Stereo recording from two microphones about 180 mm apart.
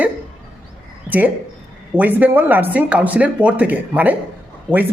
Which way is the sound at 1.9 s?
10° right (ahead or behind).